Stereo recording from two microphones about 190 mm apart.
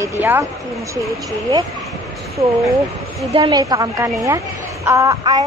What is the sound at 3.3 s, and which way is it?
A woman's voice, 25° right (ahead or behind).